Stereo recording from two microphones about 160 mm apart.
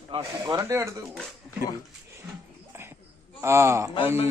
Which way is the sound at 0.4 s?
20° right (ahead or behind).